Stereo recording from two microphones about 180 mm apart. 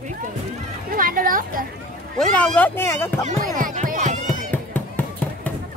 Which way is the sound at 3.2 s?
45° right (ahead or behind).